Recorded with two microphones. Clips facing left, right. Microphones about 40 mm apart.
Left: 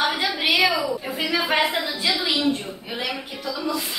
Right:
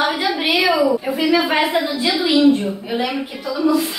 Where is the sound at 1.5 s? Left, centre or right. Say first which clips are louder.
Right 4 dB; centre.